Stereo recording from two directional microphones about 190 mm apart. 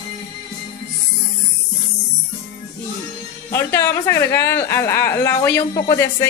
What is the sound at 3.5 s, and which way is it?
Speech, 15° left (ahead or behind).